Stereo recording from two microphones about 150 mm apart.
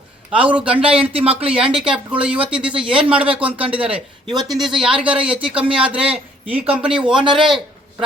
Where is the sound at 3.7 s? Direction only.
10° right (ahead or behind).